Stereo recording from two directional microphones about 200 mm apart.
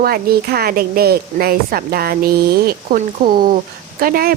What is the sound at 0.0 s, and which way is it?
A woman's voice, 50° right (ahead or behind).